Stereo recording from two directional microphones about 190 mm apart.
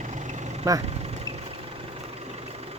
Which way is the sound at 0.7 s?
15° right (ahead or behind).